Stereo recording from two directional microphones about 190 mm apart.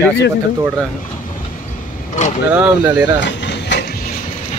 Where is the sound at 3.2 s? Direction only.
65° left (ahead or behind).